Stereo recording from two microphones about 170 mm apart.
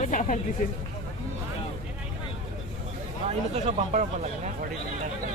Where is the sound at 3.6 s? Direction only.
45° right (ahead or behind).